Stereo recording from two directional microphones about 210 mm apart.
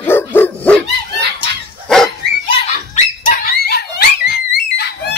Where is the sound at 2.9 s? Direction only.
35° left (ahead or behind).